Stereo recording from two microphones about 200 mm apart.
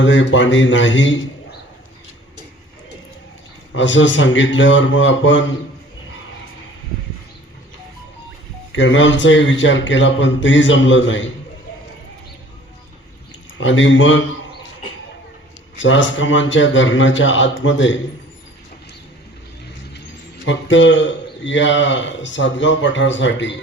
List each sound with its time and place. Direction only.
0.0 s speech: 65° left (ahead or behind)
3.8 s speech: 65° left (ahead or behind)
8.7 s speech: 70° left (ahead or behind)
13.6 s a man's voice: 70° left (ahead or behind)
15.8 s speech: 70° left (ahead or behind)
20.4 s a man's voice: 65° left (ahead or behind)